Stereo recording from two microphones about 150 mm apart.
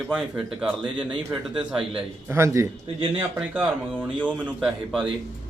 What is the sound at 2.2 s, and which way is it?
Speech, 20° right (ahead or behind).